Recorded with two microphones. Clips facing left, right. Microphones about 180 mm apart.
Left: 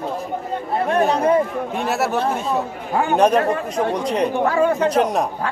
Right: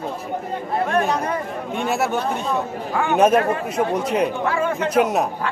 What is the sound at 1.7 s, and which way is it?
Speech, centre (ahead or behind).